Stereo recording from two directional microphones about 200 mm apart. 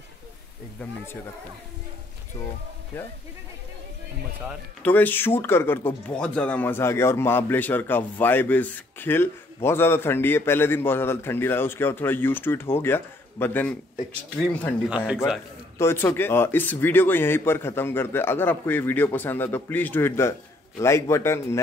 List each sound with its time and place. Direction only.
4.8 s speech: 10° left (ahead or behind)
15.8 s speech: 10° left (ahead or behind)